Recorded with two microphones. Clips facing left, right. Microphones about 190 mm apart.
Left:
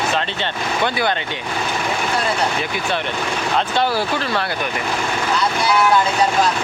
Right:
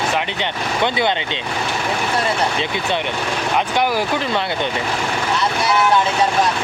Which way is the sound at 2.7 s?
20° right (ahead or behind).